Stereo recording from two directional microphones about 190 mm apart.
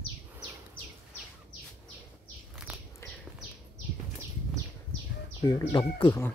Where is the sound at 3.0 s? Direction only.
15° left (ahead or behind).